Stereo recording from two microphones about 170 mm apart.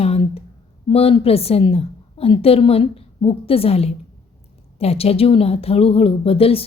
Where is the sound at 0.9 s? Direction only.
35° left (ahead or behind).